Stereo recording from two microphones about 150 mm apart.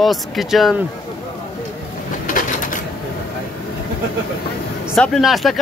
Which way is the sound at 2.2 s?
60° left (ahead or behind).